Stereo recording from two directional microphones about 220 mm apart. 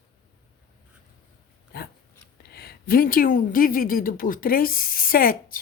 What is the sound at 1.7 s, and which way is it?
Dog, 45° left (ahead or behind).